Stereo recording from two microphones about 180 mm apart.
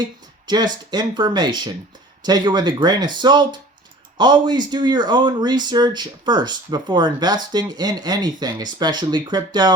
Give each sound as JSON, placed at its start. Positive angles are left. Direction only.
{"t": 0.0, "sound": "speech", "side_deg": -25}